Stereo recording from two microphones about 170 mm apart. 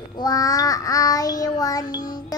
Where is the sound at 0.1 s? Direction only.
20° left (ahead or behind).